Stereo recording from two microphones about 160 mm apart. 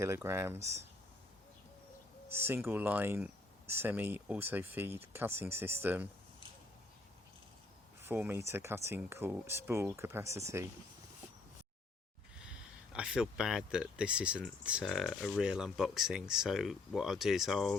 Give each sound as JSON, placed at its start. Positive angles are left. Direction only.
{"t": 0.0, "sound": "speech", "side_deg": -15}
{"t": 2.3, "sound": "speech", "side_deg": -15}
{"t": 8.0, "sound": "speech", "side_deg": -15}
{"t": 12.4, "sound": "speech", "side_deg": -5}